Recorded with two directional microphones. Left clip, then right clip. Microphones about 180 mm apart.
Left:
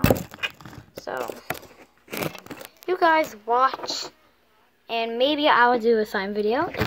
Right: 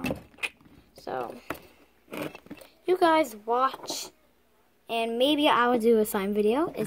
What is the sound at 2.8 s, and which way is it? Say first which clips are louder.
Speech: left 3 dB; 45° right (ahead or behind).